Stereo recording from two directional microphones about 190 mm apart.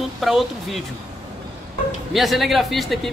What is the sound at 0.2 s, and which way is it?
Speech, centre (ahead or behind).